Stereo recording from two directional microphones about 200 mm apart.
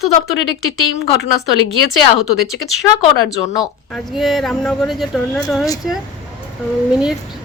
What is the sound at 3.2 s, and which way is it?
Speech, 20° left (ahead or behind).